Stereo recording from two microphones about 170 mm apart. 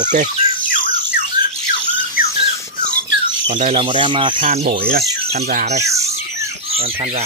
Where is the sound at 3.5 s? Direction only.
35° right (ahead or behind).